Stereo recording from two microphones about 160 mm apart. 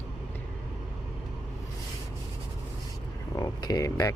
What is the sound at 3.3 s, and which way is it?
Speech, 25° left (ahead or behind).